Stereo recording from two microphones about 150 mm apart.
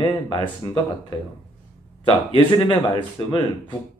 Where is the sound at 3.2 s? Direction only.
25° left (ahead or behind).